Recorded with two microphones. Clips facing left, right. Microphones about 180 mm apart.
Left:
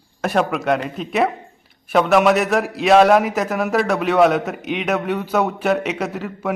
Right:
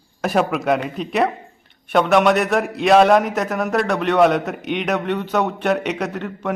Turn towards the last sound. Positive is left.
turn(degrees=5)  # may be behind; listen again after turning